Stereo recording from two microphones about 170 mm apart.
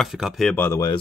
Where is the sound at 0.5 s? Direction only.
10° left (ahead or behind).